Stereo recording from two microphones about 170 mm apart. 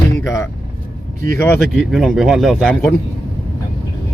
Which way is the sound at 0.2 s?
20° left (ahead or behind).